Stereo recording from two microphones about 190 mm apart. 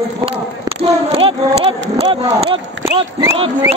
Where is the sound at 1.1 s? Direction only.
30° right (ahead or behind).